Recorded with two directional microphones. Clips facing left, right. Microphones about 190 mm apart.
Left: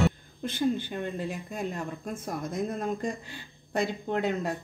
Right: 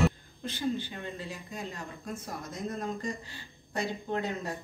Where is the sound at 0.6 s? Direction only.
50° left (ahead or behind).